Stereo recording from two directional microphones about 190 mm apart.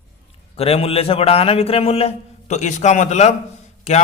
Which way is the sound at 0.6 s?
30° left (ahead or behind).